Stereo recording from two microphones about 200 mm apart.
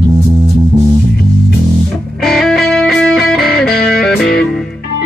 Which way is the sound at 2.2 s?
Centre (ahead or behind).